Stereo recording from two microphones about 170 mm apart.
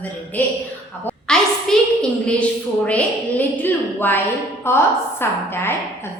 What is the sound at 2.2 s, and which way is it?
A woman's voice, 5° left (ahead or behind).